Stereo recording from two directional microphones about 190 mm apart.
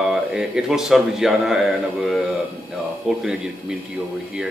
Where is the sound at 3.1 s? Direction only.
Centre (ahead or behind).